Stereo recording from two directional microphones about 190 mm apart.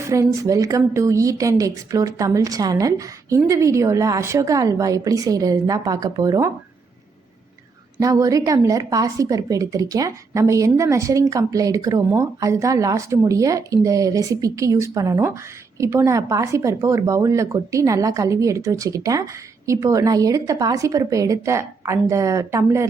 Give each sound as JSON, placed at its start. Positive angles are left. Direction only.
{"t": 0.0, "sound": "a woman's voice", "side_deg": -15}
{"t": 7.9, "sound": "a woman's voice", "side_deg": -15}